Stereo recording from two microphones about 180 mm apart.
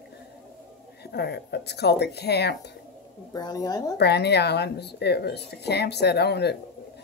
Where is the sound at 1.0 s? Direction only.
65° left (ahead or behind).